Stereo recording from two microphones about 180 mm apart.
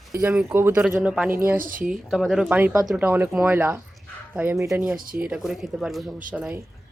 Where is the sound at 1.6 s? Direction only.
50° right (ahead or behind).